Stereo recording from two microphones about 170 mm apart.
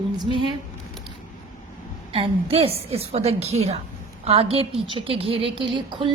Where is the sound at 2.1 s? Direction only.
35° right (ahead or behind).